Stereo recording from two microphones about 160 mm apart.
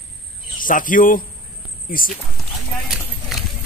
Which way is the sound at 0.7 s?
60° left (ahead or behind).